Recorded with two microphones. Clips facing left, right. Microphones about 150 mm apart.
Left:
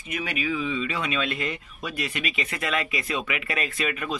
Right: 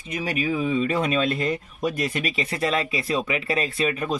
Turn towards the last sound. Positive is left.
turn(degrees=-35)  # may be behind; listen again after turning